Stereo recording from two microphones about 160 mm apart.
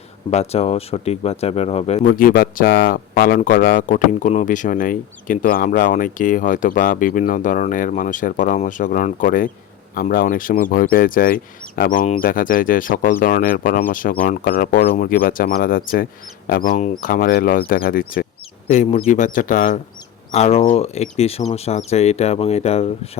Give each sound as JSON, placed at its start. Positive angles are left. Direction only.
{"t": 0.3, "sound": "speech", "side_deg": 40}
{"t": 2.0, "sound": "speech", "side_deg": 60}
{"t": 14.9, "sound": "speech", "side_deg": 65}
{"t": 18.7, "sound": "speech", "side_deg": 50}
{"t": 20.3, "sound": "speech", "side_deg": 40}